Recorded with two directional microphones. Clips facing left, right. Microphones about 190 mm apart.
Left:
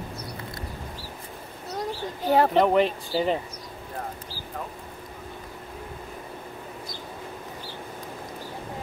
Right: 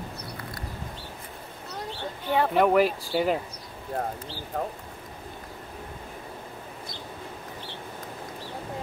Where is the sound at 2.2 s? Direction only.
40° left (ahead or behind).